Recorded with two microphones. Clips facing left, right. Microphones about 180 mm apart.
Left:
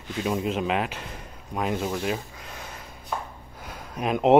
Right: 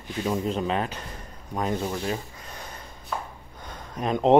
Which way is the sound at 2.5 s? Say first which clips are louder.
Even; 5° left (ahead or behind).